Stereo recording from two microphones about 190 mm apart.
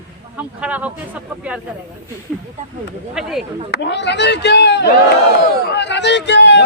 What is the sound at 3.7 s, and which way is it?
A man's voice, 65° left (ahead or behind).